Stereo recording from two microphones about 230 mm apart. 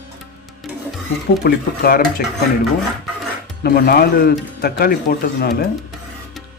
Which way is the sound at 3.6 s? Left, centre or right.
Left.